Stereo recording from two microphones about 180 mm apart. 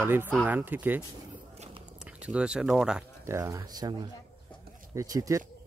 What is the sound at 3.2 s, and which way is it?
Speech, 15° right (ahead or behind).